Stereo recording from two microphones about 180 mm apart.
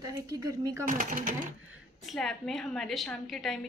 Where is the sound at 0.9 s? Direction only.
50° right (ahead or behind).